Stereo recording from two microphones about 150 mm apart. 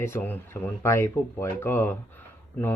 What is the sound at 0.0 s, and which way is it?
Speech, 15° left (ahead or behind).